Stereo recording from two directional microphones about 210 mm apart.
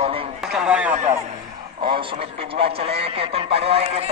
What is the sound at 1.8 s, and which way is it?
A man's voice, 25° right (ahead or behind).